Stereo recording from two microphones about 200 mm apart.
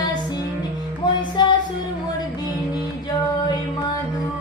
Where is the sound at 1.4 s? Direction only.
20° left (ahead or behind).